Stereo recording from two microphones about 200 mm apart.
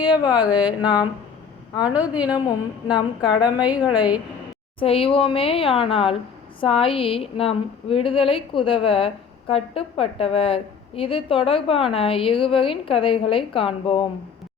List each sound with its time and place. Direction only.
0.3 s a woman's voice: 5° right (ahead or behind)
0.8 s a woman's voice: 20° left (ahead or behind)
1.8 s a woman's voice: 5° right (ahead or behind)
2.8 s a woman's voice: 20° left (ahead or behind)
3.6 s a woman's voice: 5° right (ahead or behind)
4.8 s a woman's voice: 25° left (ahead or behind)